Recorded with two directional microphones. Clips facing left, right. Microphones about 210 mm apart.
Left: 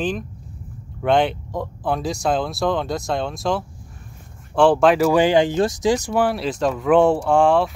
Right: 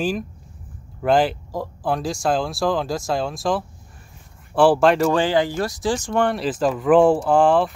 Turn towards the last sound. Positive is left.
turn(degrees=-5)  # may be behind; listen again after turning